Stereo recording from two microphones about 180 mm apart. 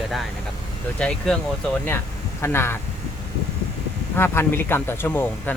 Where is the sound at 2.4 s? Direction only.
15° left (ahead or behind).